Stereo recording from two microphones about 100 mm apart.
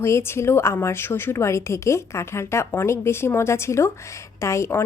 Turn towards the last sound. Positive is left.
turn(degrees=25)  # may be behind; listen again after turning